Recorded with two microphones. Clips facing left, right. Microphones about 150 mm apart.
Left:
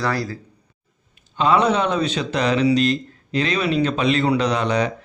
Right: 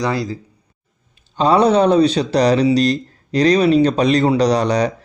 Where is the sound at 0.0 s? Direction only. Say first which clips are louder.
Right 3 dB; 20° right (ahead or behind).